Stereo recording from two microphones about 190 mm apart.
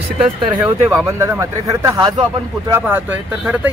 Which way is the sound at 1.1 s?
15° right (ahead or behind).